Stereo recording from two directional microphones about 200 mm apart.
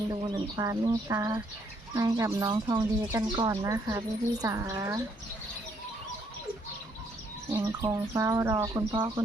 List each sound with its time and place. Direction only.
0.1 s speech: 15° right (ahead or behind)
7.5 s speech: 15° right (ahead or behind)